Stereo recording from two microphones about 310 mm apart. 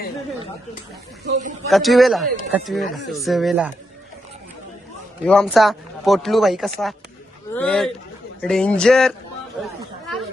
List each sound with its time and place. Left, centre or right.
1.2 s speech: right
1.7 s speech: centre
5.2 s speech: centre